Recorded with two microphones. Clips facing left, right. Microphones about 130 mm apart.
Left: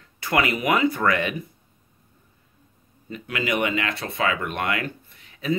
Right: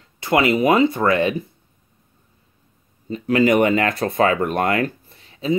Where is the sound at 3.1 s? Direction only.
35° right (ahead or behind).